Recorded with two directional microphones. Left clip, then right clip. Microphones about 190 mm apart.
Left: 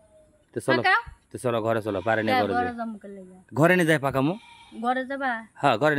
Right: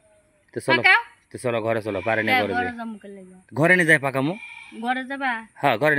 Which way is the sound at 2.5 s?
10° left (ahead or behind).